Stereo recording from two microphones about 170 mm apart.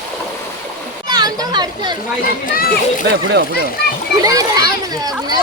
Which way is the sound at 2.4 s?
60° left (ahead or behind).